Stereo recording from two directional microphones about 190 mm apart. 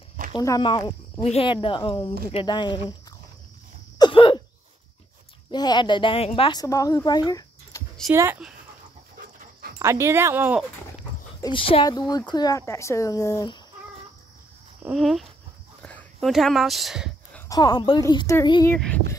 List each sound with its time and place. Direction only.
0.3 s speech: 20° left (ahead or behind)
4.0 s a sound: 25° left (ahead or behind)
5.5 s speech: 20° left (ahead or behind)
8.1 s speech: 10° right (ahead or behind)
9.8 s speech: 15° right (ahead or behind)
11.4 s speech: 30° left (ahead or behind)
14.8 s speech: centre (ahead or behind)
17.3 s speech: 15° left (ahead or behind)